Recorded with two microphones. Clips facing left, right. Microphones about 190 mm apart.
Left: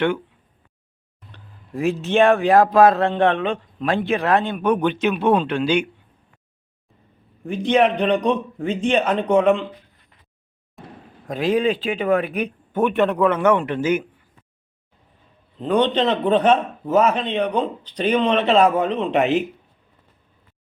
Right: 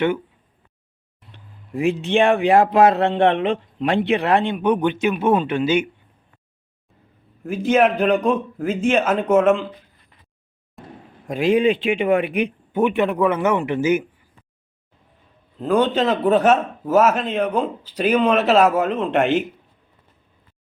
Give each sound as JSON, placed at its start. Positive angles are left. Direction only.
{"t": 1.8, "sound": "a man's voice", "side_deg": -15}
{"t": 7.4, "sound": "a man's voice", "side_deg": -5}
{"t": 10.8, "sound": "a sound", "side_deg": 0}
{"t": 11.4, "sound": "speech", "side_deg": 40}
{"t": 12.7, "sound": "a man's voice", "side_deg": -10}
{"t": 15.5, "sound": "a man's voice", "side_deg": -5}